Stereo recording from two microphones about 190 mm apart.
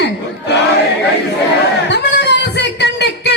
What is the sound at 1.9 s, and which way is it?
Singing, 65° left (ahead or behind).